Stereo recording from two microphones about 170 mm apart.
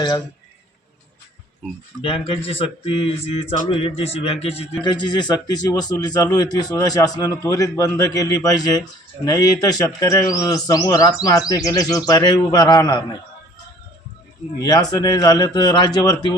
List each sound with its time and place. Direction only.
2.0 s speech: 30° left (ahead or behind)
4.8 s speech: 25° left (ahead or behind)
14.6 s speech: 20° left (ahead or behind)